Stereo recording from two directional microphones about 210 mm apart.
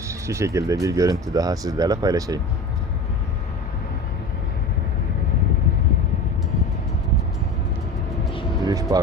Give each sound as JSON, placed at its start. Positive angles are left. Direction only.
{"t": 0.1, "sound": "speech", "side_deg": -15}
{"t": 8.6, "sound": "vehicle", "side_deg": -15}